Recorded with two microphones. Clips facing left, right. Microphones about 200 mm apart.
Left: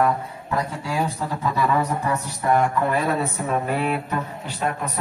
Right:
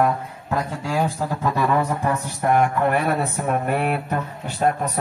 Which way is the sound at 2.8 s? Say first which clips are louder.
Right 2 dB; 65° right (ahead or behind).